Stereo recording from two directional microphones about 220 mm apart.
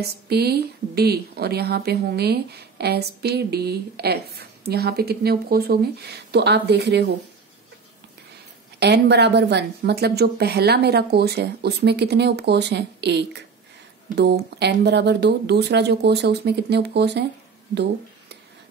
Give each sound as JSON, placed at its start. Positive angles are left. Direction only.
{"t": 0.0, "sound": "a woman's voice", "side_deg": -45}
{"t": 8.7, "sound": "a woman's voice", "side_deg": -50}